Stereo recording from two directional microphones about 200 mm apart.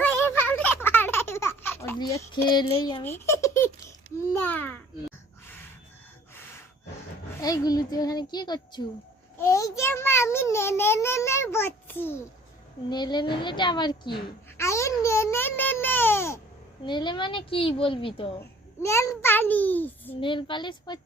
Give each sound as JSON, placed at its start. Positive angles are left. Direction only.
{"t": 0.0, "sound": "a sound", "side_deg": 10}
{"t": 2.0, "sound": "a woman's voice", "side_deg": 20}
{"t": 3.0, "sound": "babbling", "side_deg": 10}
{"t": 7.4, "sound": "a woman's voice", "side_deg": 20}
{"t": 12.9, "sound": "a woman's voice", "side_deg": 20}
{"t": 16.8, "sound": "a woman's voice", "side_deg": 25}
{"t": 18.3, "sound": "a child's voice", "side_deg": 15}
{"t": 20.1, "sound": "a woman's voice", "side_deg": 25}